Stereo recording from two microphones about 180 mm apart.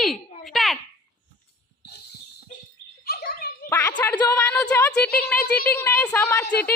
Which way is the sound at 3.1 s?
60° left (ahead or behind).